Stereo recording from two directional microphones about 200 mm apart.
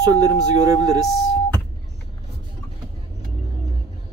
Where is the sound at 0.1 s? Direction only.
20° right (ahead or behind).